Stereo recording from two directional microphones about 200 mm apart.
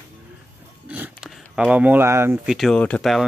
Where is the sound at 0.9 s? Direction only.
10° right (ahead or behind).